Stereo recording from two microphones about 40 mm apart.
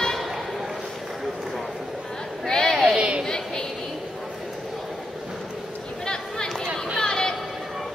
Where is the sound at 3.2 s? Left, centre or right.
Centre.